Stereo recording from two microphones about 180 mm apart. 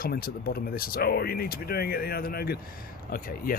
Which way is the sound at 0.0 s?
55° left (ahead or behind).